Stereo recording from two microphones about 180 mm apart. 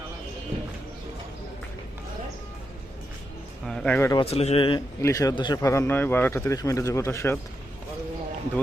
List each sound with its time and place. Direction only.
3.7 s speech: 5° left (ahead or behind)
4.2 s speech: 35° left (ahead or behind)
4.9 s a man's voice: 20° left (ahead or behind)